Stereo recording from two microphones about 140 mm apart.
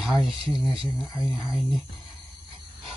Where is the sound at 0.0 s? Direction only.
Centre (ahead or behind).